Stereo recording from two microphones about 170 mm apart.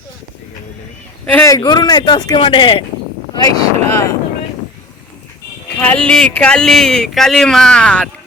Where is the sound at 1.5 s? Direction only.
25° left (ahead or behind).